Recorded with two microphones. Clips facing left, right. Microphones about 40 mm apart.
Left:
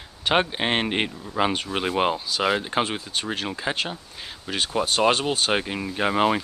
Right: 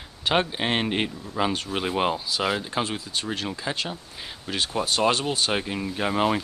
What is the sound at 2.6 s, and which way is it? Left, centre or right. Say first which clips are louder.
Speech: left 3 dB; left.